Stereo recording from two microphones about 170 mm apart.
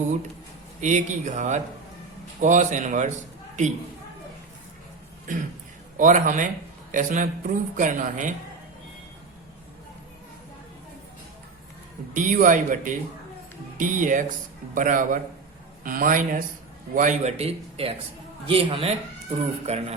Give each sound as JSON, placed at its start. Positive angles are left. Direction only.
{"t": 0.8, "sound": "speech", "side_deg": -45}
{"t": 6.0, "sound": "speech", "side_deg": -50}
{"t": 12.1, "sound": "speech", "side_deg": -50}